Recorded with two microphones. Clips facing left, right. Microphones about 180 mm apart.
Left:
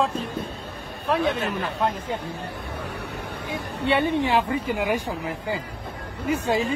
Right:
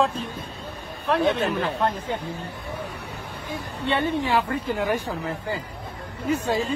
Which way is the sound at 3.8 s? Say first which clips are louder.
Left 2 dB; 15° left (ahead or behind).